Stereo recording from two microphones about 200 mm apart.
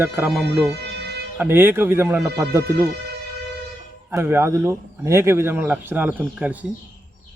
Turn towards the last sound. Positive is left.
turn(degrees=-5)  # may be behind; listen again after turning